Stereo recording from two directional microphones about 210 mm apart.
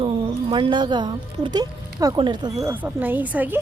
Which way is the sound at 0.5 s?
20° right (ahead or behind).